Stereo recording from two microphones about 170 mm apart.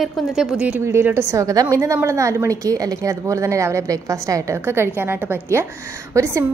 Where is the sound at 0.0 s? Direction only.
Centre (ahead or behind).